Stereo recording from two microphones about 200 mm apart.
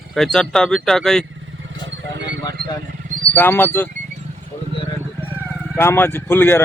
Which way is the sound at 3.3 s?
10° left (ahead or behind).